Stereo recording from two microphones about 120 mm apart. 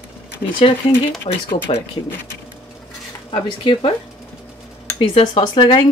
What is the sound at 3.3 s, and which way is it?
Speech, 45° left (ahead or behind).